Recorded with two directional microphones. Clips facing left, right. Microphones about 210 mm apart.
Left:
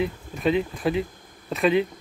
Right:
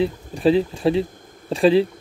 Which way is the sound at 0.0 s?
30° right (ahead or behind).